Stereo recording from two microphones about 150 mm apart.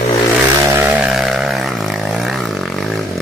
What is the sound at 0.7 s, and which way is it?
Vehicle, 15° right (ahead or behind).